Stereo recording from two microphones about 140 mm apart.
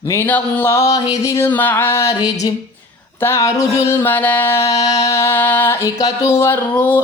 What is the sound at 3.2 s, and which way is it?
Female singing, 20° left (ahead or behind).